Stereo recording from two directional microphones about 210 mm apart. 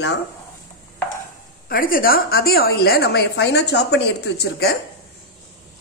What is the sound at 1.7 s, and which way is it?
A woman's voice, 40° left (ahead or behind).